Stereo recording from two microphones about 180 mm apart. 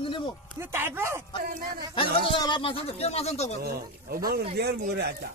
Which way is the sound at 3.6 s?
55° right (ahead or behind).